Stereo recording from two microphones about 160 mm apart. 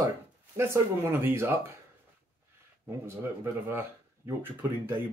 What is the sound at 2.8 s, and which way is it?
Speech, 15° right (ahead or behind).